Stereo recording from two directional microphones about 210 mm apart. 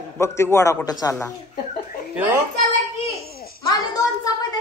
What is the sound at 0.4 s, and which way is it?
Speech, 15° left (ahead or behind).